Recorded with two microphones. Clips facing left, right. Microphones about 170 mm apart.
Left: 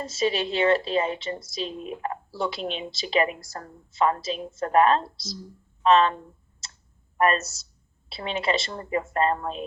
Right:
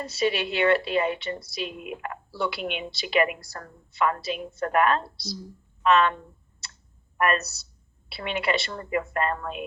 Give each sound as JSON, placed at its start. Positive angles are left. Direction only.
{"t": 0.0, "sound": "a woman's voice", "side_deg": 25}
{"t": 7.2, "sound": "a woman's voice", "side_deg": 30}